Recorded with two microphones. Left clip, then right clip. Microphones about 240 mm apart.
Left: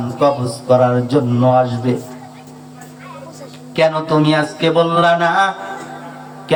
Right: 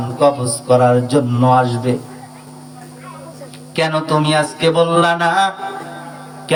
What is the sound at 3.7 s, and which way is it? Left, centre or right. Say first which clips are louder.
Mantra: left 2 dB; right.